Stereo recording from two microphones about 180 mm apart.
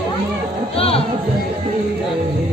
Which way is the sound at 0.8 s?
35° left (ahead or behind).